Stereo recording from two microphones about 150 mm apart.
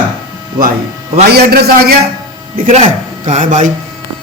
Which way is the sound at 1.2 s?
90° right.